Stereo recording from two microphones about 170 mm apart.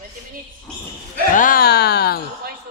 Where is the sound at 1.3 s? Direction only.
55° left (ahead or behind); by 2.2 s 70° left (ahead or behind).